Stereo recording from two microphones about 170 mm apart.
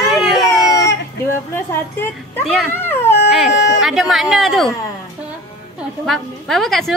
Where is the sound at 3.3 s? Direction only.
Centre (ahead or behind).